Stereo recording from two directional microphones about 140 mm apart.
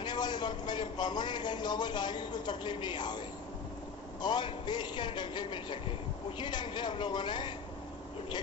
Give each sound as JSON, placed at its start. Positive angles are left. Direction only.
{"t": 0.0, "sound": "a man's voice", "side_deg": 30}
{"t": 4.2, "sound": "a man's voice", "side_deg": 30}